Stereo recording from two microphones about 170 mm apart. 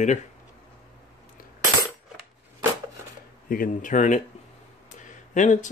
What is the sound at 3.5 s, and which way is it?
Speech, 50° left (ahead or behind).